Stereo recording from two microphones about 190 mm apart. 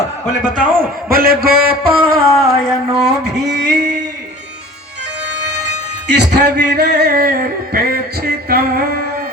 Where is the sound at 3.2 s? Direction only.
60° right (ahead or behind).